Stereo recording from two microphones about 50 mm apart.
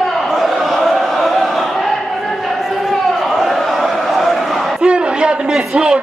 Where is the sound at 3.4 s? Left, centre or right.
Centre.